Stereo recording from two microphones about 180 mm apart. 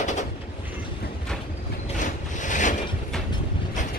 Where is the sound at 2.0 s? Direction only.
45° left (ahead or behind).